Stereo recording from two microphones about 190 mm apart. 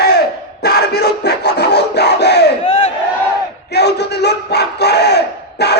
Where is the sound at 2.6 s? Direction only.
30° left (ahead or behind).